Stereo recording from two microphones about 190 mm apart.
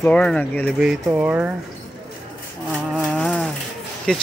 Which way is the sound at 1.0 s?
10° right (ahead or behind).